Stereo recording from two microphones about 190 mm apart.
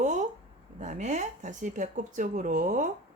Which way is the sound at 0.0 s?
40° right (ahead or behind).